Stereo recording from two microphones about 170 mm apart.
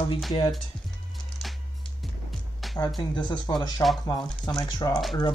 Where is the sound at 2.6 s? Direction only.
Centre (ahead or behind).